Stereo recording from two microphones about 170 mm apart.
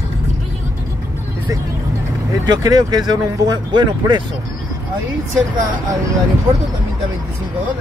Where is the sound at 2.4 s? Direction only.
25° right (ahead or behind).